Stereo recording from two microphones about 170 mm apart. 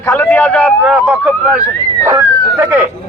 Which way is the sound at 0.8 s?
5° right (ahead or behind).